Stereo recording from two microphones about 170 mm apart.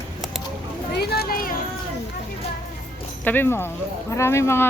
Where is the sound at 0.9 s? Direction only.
65° left (ahead or behind).